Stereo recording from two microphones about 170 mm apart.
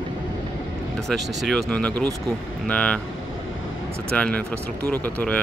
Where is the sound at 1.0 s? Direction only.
Centre (ahead or behind).